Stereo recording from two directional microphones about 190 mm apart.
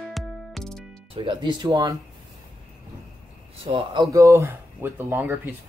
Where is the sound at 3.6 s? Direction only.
30° right (ahead or behind).